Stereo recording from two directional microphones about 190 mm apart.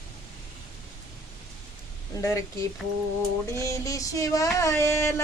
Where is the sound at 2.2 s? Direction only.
15° left (ahead or behind).